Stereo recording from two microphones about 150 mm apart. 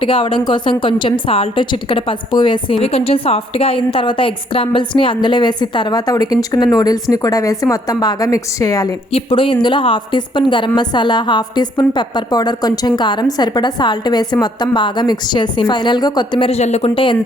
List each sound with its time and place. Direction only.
0.0 s a woman's voice: 35° left (ahead or behind)
9.1 s a woman's voice: 35° left (ahead or behind)